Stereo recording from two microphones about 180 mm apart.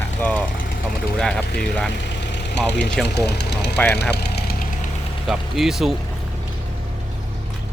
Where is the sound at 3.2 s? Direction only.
70° left (ahead or behind).